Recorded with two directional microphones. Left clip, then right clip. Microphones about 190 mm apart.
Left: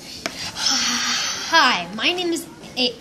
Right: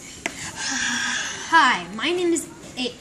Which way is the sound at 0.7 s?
30° left (ahead or behind).